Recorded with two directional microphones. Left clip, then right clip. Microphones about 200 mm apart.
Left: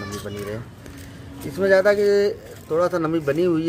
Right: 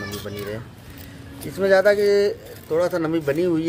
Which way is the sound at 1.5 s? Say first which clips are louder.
Even; 15° left (ahead or behind).